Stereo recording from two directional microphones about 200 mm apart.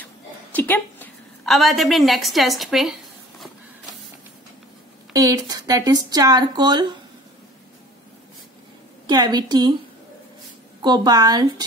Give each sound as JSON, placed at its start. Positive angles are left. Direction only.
{"t": 0.0, "sound": "a sound", "side_deg": 10}
{"t": 5.1, "sound": "speech", "side_deg": -15}
{"t": 9.0, "sound": "speech", "side_deg": -20}
{"t": 10.8, "sound": "speech", "side_deg": -20}